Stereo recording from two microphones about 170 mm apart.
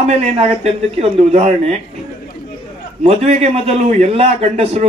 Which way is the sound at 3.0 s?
35° right (ahead or behind).